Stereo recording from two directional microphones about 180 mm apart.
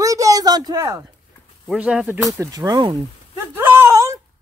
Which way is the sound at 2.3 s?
20° right (ahead or behind).